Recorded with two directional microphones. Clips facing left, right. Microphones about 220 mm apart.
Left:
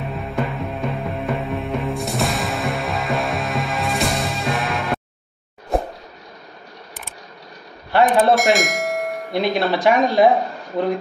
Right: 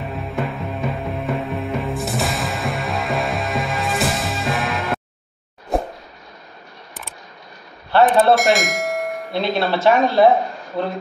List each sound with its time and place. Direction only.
0.1 s music: centre (ahead or behind)
5.7 s a sound: centre (ahead or behind)
7.9 s speech: 15° left (ahead or behind)
8.4 s bell: centre (ahead or behind)
9.3 s speech: 15° left (ahead or behind)